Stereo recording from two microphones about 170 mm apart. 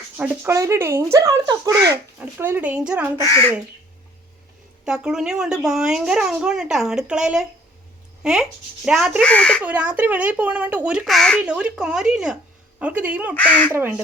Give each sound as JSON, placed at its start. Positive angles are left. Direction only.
{"t": 0.2, "sound": "speech", "side_deg": -15}
{"t": 3.2, "sound": "speech", "side_deg": 20}
{"t": 4.9, "sound": "speech", "side_deg": -5}
{"t": 9.2, "sound": "speech", "side_deg": 5}
{"t": 9.6, "sound": "speech", "side_deg": -10}
{"t": 13.4, "sound": "speech", "side_deg": 10}
{"t": 13.7, "sound": "speech", "side_deg": -10}